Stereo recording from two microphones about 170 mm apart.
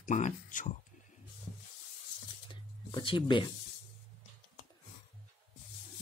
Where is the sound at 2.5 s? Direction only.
30° left (ahead or behind).